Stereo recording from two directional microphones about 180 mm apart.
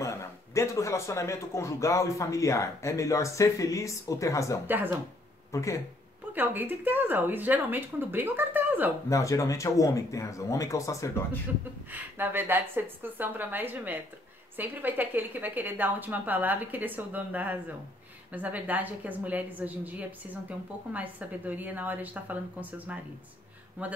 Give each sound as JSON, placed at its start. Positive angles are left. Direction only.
{"t": 0.0, "sound": "a man's voice", "side_deg": 15}
{"t": 4.6, "sound": "a woman's voice", "side_deg": -10}
{"t": 5.5, "sound": "speech", "side_deg": 15}
{"t": 6.3, "sound": "a woman's voice", "side_deg": -10}
{"t": 9.1, "sound": "a man's voice", "side_deg": 15}
{"t": 11.9, "sound": "a woman's voice", "side_deg": -10}